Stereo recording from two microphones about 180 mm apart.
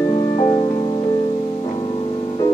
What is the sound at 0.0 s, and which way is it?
Music, 25° left (ahead or behind).